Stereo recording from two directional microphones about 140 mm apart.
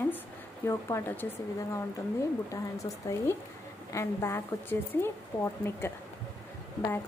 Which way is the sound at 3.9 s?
20° left (ahead or behind).